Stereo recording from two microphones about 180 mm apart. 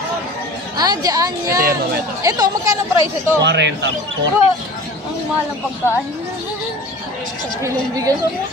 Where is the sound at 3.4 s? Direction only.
75° right (ahead or behind).